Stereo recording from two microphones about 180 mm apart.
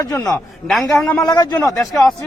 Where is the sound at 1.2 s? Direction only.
20° left (ahead or behind).